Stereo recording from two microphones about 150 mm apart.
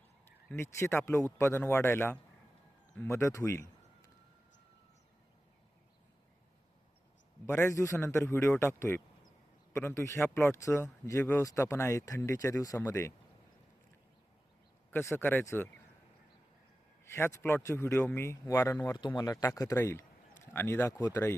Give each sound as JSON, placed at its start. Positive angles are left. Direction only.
{"t": 0.5, "sound": "speech", "side_deg": 15}
{"t": 7.4, "sound": "speech", "side_deg": 15}
{"t": 14.8, "sound": "speech", "side_deg": 10}
{"t": 17.1, "sound": "speech", "side_deg": 15}
{"t": 18.9, "sound": "speech", "side_deg": 30}